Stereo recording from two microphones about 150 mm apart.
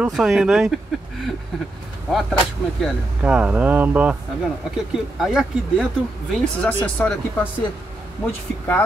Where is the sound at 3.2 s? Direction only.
10° right (ahead or behind); by 7.5 s 10° left (ahead or behind).